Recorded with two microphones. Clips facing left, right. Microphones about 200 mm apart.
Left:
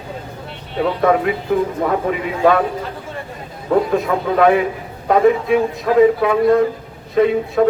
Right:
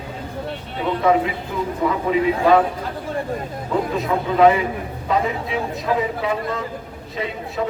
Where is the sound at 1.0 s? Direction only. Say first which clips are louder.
Left 1 dB; 55° left (ahead or behind).